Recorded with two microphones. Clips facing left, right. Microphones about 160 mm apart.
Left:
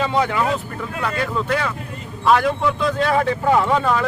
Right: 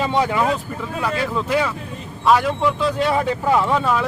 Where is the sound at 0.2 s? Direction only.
10° right (ahead or behind).